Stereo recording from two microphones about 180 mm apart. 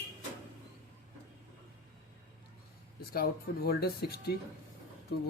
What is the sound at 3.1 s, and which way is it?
A man's voice, 55° left (ahead or behind).